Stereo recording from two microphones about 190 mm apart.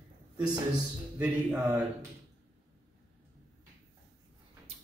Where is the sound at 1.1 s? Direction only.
10° right (ahead or behind).